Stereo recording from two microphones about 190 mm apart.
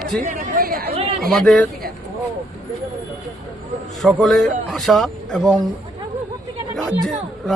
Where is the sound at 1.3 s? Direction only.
5° left (ahead or behind).